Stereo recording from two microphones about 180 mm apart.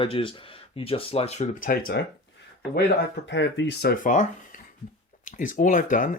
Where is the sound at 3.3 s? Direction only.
85° left; by 4.2 s 50° left (ahead or behind).